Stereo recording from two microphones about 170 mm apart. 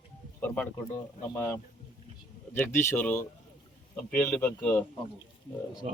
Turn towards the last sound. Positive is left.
turn(degrees=-45)  # may be behind; listen again after turning